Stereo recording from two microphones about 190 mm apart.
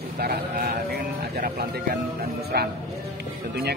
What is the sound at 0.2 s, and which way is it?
Speech, 55° right (ahead or behind).